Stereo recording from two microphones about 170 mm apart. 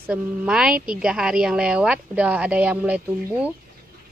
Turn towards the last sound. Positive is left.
turn(degrees=-10)  # may be behind; listen again after turning